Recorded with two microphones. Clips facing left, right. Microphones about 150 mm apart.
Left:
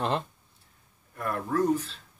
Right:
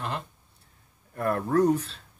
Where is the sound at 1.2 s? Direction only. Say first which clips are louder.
Right 4 dB; 55° right (ahead or behind).